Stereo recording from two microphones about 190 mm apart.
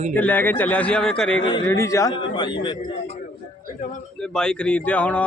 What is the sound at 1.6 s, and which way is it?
A man's voice, 15° left (ahead or behind).